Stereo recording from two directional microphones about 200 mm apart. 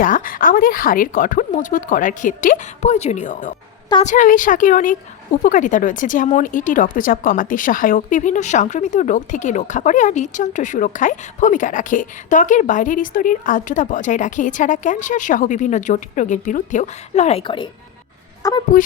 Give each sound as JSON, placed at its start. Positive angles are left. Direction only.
{"t": 0.0, "sound": "a woman's voice", "side_deg": 45}